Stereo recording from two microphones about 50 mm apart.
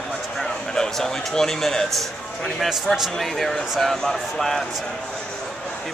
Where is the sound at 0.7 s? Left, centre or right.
Centre.